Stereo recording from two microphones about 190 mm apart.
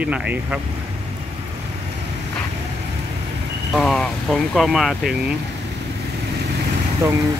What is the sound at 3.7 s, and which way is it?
Speech, centre (ahead or behind).